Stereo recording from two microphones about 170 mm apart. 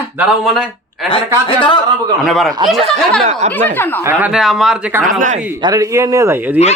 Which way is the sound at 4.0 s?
10° right (ahead or behind).